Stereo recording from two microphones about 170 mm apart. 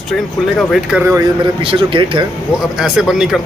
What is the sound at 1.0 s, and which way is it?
Speech, 20° right (ahead or behind).